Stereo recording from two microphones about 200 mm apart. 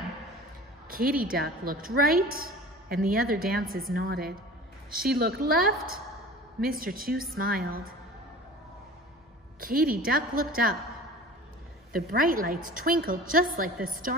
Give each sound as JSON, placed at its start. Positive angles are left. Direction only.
{"t": 0.8, "sound": "a woman's voice", "side_deg": -45}
{"t": 6.8, "sound": "a woman's voice", "side_deg": -45}
{"t": 9.6, "sound": "a woman's voice", "side_deg": -45}
{"t": 11.9, "sound": "a woman's voice", "side_deg": -45}